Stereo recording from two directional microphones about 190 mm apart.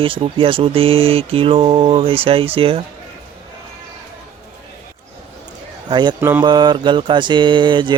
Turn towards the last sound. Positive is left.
turn(degrees=-25)  # may be behind; listen again after turning